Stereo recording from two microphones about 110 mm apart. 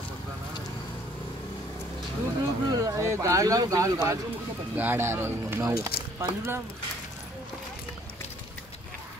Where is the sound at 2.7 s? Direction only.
30° right (ahead or behind).